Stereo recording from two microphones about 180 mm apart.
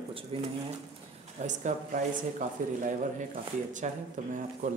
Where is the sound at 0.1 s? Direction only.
30° right (ahead or behind).